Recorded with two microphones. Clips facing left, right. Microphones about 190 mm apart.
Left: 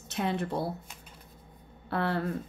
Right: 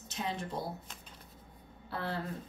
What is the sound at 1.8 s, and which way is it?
Speech, 65° left (ahead or behind).